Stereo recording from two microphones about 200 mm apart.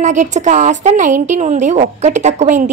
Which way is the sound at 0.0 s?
35° right (ahead or behind).